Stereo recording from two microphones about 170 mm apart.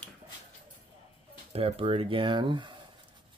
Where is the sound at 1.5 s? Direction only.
35° right (ahead or behind).